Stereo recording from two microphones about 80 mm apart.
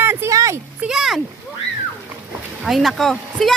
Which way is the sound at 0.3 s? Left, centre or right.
Right.